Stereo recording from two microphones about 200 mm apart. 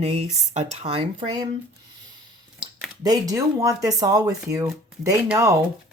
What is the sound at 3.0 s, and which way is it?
Speech, 15° right (ahead or behind).